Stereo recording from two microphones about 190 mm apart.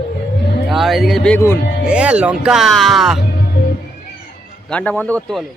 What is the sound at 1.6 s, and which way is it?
Music, 55° left (ahead or behind).